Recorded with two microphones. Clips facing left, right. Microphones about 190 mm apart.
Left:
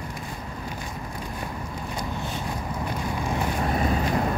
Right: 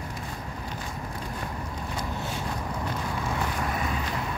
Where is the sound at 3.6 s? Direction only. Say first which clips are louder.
Left 5 dB; 35° left (ahead or behind).